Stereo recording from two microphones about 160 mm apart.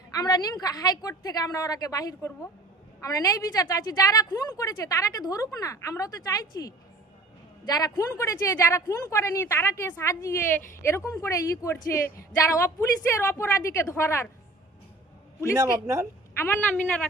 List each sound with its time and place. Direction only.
0.1 s a woman's voice: 25° left (ahead or behind)
15.5 s speech: 15° right (ahead or behind)
16.4 s a woman's voice: 10° left (ahead or behind)